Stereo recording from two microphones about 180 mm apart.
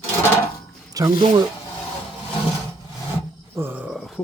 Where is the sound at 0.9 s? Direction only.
20° right (ahead or behind).